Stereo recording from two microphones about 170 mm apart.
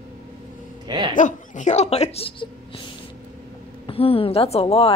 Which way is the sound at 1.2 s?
45° left (ahead or behind).